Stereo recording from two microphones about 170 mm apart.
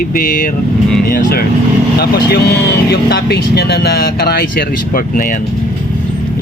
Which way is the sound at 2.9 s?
65° left (ahead or behind).